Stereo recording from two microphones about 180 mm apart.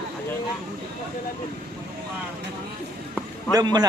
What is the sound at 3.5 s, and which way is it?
Speech, 20° right (ahead or behind).